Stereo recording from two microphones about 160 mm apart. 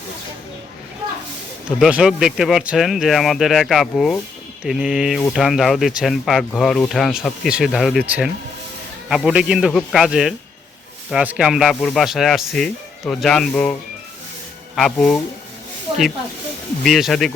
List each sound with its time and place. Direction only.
1.8 s speech: 5° right (ahead or behind)
14.8 s speech: centre (ahead or behind)
15.9 s snake: 35° right (ahead or behind)
16.8 s speech: centre (ahead or behind)